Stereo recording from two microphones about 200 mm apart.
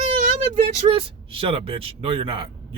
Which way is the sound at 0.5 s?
35° right (ahead or behind).